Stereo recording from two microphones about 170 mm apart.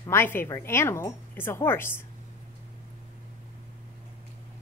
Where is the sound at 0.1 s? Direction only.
10° left (ahead or behind).